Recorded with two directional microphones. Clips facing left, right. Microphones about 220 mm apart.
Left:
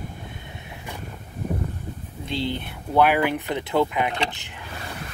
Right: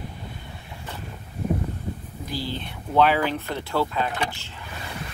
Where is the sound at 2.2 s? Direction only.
25° left (ahead or behind).